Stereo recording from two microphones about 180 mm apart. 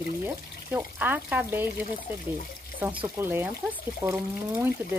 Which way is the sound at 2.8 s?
10° right (ahead or behind).